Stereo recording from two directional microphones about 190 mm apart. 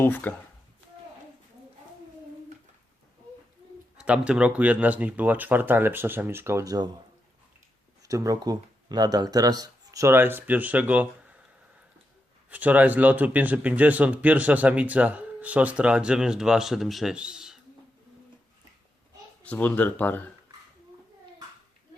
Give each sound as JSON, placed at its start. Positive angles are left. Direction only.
{"t": 0.0, "sound": "speech", "side_deg": 10}
{"t": 3.9, "sound": "speech", "side_deg": -5}
{"t": 8.0, "sound": "speech", "side_deg": -15}
{"t": 12.5, "sound": "speech", "side_deg": -10}
{"t": 19.4, "sound": "speech", "side_deg": 10}